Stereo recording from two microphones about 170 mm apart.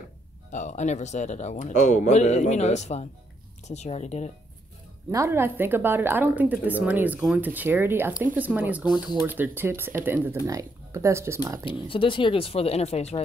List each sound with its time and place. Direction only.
0.5 s speech: 45° left (ahead or behind)
5.1 s a woman's voice: 15° right (ahead or behind)
11.6 s speech: 30° left (ahead or behind)